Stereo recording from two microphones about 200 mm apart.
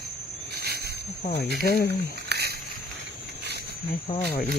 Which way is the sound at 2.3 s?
50° right (ahead or behind).